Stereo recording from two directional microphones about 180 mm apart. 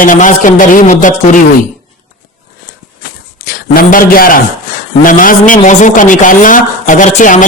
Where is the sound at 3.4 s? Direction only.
55° left (ahead or behind).